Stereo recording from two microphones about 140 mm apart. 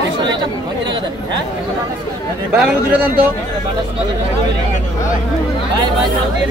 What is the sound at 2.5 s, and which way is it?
Speech, 10° right (ahead or behind).